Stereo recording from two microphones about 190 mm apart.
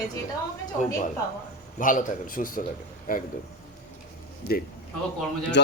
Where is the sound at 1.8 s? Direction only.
45° left (ahead or behind).